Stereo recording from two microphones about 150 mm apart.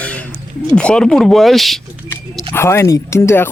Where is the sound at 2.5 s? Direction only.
15° left (ahead or behind).